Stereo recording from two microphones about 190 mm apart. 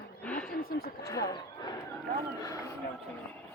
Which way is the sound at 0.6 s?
50° left (ahead or behind).